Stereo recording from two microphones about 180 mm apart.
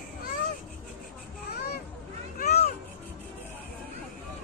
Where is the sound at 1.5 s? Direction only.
60° left (ahead or behind).